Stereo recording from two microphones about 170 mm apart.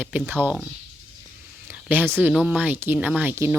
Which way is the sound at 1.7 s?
10° right (ahead or behind).